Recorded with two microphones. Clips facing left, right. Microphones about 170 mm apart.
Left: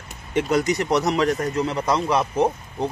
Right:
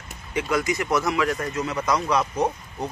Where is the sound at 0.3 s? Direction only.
45° left (ahead or behind).